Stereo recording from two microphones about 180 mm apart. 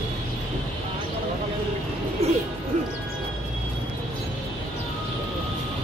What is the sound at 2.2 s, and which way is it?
Music, 35° right (ahead or behind).